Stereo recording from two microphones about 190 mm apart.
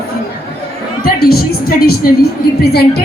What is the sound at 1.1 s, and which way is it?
A woman's voice, 55° left (ahead or behind).